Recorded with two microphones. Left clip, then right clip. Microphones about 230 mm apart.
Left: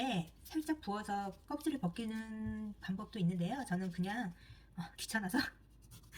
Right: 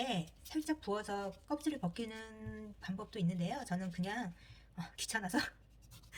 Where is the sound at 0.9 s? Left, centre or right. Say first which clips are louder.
Even; right.